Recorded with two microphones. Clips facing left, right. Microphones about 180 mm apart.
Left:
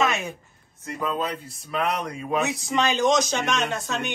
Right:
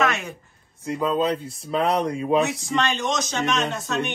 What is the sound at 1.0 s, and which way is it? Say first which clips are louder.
Speech: right 5 dB; 30° right (ahead or behind).